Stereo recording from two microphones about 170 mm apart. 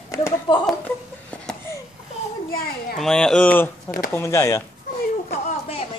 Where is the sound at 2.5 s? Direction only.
60° left (ahead or behind).